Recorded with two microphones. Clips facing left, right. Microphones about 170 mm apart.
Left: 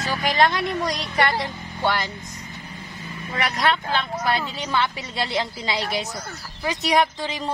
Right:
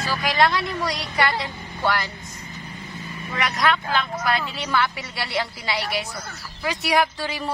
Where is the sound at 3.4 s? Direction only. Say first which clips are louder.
Even; 30° left (ahead or behind).